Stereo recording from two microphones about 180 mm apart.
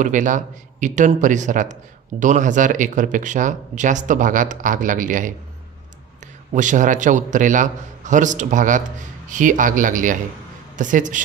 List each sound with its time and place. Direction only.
0.0 s speech: 45° right (ahead or behind)
6.5 s speech: 45° right (ahead or behind)